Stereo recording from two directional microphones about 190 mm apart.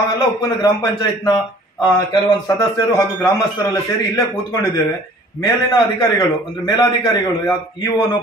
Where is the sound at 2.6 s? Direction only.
20° left (ahead or behind).